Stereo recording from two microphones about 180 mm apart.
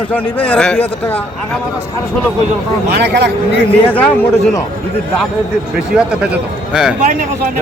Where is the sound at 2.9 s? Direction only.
70° right (ahead or behind).